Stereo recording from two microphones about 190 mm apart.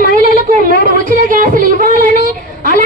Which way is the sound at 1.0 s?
45° right (ahead or behind).